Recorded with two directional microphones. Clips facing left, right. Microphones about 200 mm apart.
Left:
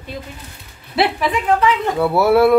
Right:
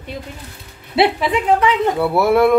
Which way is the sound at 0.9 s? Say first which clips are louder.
Right 2 dB; 20° right (ahead or behind).